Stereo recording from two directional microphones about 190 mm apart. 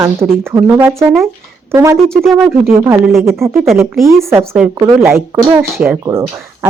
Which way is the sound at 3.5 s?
Centre (ahead or behind).